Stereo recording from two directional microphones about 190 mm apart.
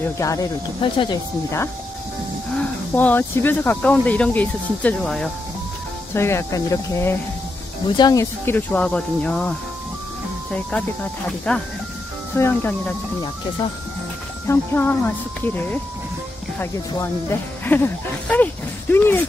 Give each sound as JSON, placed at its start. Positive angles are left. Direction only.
{"t": 0.0, "sound": "speech", "side_deg": 15}
{"t": 2.5, "sound": "speech", "side_deg": 10}
{"t": 11.5, "sound": "speech", "side_deg": 5}
{"t": 14.5, "sound": "speech", "side_deg": 10}